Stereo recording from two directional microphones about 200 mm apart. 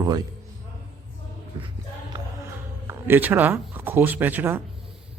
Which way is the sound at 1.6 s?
15° right (ahead or behind).